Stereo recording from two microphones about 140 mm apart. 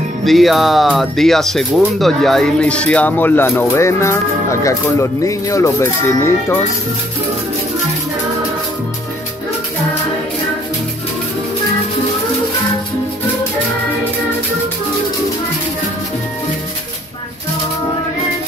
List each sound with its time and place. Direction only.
0.2 s speech: centre (ahead or behind); by 6.3 s 20° left (ahead or behind)